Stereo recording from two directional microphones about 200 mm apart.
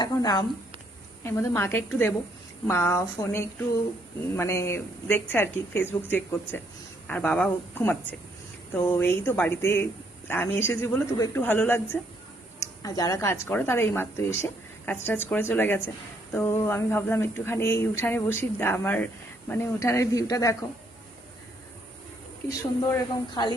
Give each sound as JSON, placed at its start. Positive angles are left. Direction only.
{"t": 0.0, "sound": "a woman's voice", "side_deg": 20}
{"t": 22.4, "sound": "speech", "side_deg": 15}